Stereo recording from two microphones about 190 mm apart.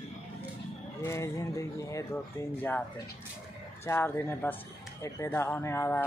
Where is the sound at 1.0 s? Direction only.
15° left (ahead or behind).